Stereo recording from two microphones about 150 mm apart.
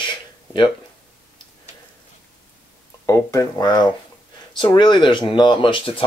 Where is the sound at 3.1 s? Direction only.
20° left (ahead or behind).